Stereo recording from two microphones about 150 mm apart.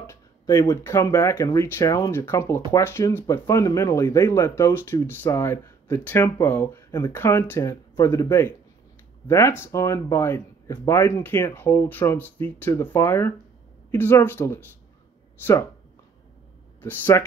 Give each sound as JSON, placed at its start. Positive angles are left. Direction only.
{"t": 0.0, "sound": "speech", "side_deg": 20}
{"t": 16.8, "sound": "speech", "side_deg": 15}